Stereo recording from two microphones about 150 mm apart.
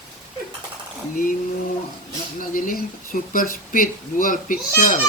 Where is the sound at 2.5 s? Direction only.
65° left (ahead or behind).